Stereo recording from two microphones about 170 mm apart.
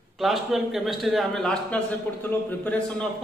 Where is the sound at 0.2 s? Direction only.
Centre (ahead or behind).